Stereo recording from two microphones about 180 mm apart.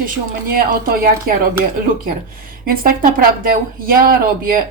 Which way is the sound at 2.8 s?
55° right (ahead or behind).